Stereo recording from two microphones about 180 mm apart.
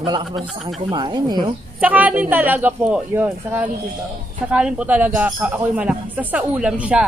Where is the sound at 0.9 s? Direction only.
25° right (ahead or behind).